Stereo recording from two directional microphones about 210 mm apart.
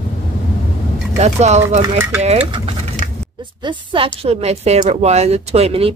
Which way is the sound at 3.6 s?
25° right (ahead or behind).